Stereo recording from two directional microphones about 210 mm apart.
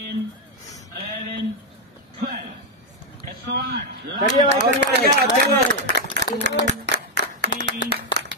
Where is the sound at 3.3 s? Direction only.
45° right (ahead or behind).